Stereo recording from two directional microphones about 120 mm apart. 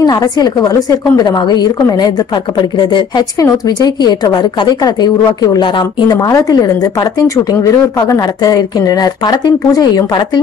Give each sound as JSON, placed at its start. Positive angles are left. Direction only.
{"t": 0.0, "sound": "a woman's voice", "side_deg": 35}